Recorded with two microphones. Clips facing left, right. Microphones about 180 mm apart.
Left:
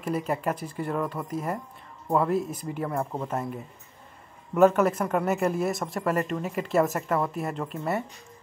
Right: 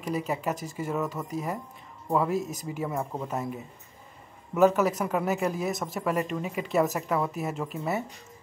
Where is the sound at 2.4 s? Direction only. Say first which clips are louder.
Left 1 dB; 40° right (ahead or behind).